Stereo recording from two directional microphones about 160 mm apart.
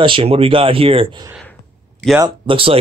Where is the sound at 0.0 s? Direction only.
35° right (ahead or behind).